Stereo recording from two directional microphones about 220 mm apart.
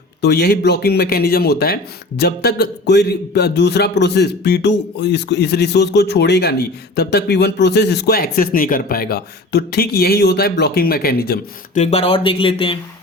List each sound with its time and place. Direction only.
0.2 s speech: 45° left (ahead or behind)
11.8 s speech: 30° left (ahead or behind)